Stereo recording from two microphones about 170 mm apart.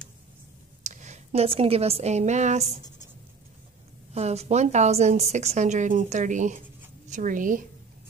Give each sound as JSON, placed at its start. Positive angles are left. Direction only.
{"t": 0.8, "sound": "a woman's voice", "side_deg": -45}
{"t": 4.1, "sound": "a woman's voice", "side_deg": -40}